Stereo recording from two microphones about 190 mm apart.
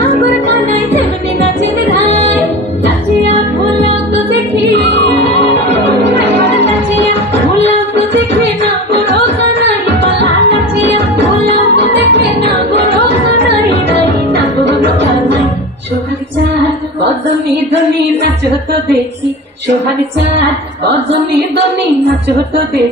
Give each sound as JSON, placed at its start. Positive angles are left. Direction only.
{"t": 6.0, "sound": "music", "side_deg": -65}
{"t": 9.1, "sound": "music", "side_deg": -65}
{"t": 12.1, "sound": "music", "side_deg": -60}
{"t": 13.7, "sound": "music", "side_deg": -60}